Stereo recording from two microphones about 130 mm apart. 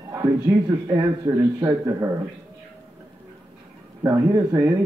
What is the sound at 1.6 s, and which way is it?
Speech, 25° right (ahead or behind).